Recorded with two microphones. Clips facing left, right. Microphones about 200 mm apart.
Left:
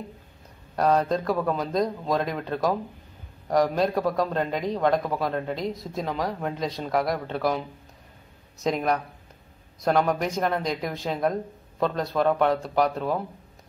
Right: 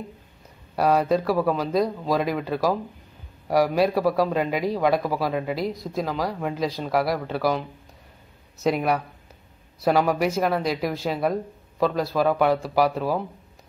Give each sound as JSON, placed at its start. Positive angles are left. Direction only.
{"t": 0.7, "sound": "a woman's voice", "side_deg": -5}